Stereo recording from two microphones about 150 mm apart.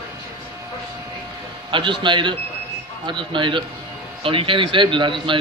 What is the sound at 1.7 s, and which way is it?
A man's voice, 35° right (ahead or behind).